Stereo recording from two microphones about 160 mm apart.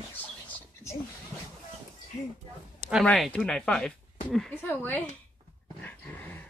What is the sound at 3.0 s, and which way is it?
A woman's voice, 5° left (ahead or behind).